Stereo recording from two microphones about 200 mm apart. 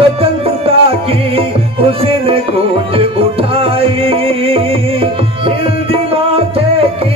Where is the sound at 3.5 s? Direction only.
30° right (ahead or behind).